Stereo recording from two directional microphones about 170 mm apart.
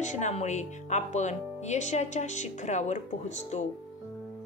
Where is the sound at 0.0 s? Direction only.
45° left (ahead or behind).